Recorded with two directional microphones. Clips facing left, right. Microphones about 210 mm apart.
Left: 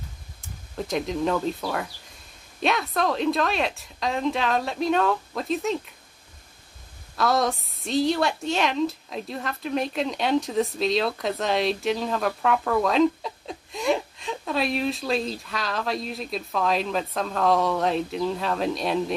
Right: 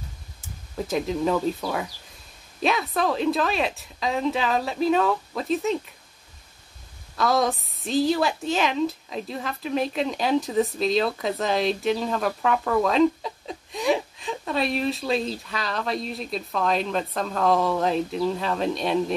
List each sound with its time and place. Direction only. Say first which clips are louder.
0.7 s a woman's voice: right 1 dB; centre (ahead or behind)
7.2 s a woman's voice: right 1 dB; centre (ahead or behind)